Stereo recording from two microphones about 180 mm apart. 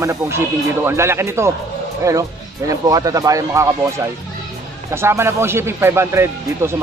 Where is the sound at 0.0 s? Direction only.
15° right (ahead or behind).